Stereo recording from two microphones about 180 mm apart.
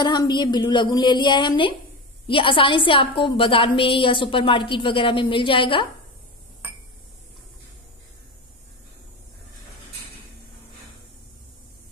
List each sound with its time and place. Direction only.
0.0 s a woman's voice: 25° left (ahead or behind)